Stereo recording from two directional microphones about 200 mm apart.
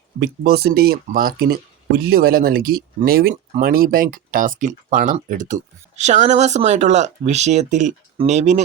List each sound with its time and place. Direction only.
0.2 s speech: 50° right (ahead or behind); by 8.6 s 35° right (ahead or behind)